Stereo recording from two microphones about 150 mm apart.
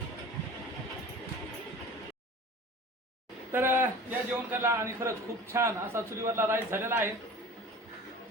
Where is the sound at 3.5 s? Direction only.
15° right (ahead or behind).